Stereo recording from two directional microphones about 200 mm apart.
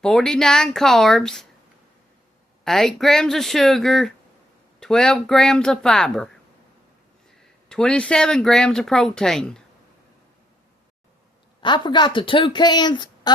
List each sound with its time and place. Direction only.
0.0 s speech: 5° left (ahead or behind)
2.6 s speech: centre (ahead or behind)
7.7 s speech: 5° left (ahead or behind)
11.6 s speech: 25° left (ahead or behind)